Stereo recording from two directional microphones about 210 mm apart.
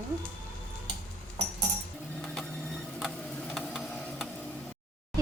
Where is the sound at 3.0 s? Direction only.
Centre (ahead or behind).